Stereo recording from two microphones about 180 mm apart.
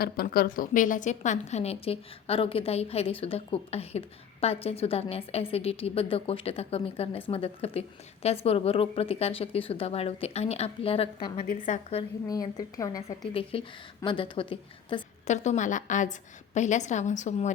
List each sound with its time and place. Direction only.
0.0 s a woman's voice: 55° left (ahead or behind); by 11.1 s 35° left (ahead or behind)
11.4 s a woman's voice: 45° left (ahead or behind)
12.3 s a woman's voice: 20° left (ahead or behind)
13.3 s a woman's voice: 30° left (ahead or behind)
15.3 s a woman's voice: 40° left (ahead or behind)